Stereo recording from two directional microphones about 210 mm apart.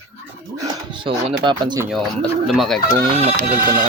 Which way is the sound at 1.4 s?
20° right (ahead or behind).